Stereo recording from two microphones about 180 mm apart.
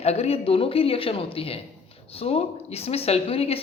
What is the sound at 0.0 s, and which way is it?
A woman's voice, 35° left (ahead or behind).